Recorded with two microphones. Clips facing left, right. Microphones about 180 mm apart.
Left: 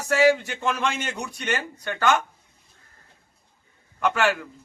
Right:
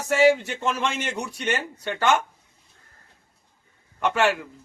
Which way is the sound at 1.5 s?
30° right (ahead or behind).